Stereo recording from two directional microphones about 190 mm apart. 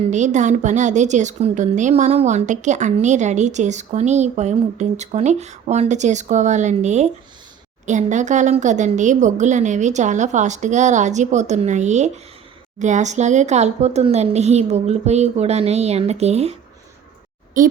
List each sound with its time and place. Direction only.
0.1 s a woman's voice: 40° right (ahead or behind)
17.6 s a woman's voice: 45° right (ahead or behind)